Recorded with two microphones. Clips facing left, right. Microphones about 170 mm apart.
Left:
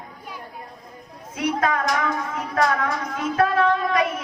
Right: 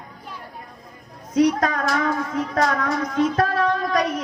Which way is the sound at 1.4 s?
40° right (ahead or behind).